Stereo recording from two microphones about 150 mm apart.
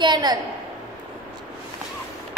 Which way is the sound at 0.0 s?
30° right (ahead or behind).